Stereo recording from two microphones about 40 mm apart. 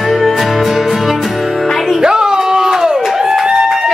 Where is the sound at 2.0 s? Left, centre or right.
Centre.